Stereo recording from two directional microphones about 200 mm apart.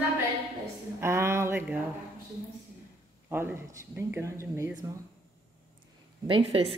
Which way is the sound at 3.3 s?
10° right (ahead or behind).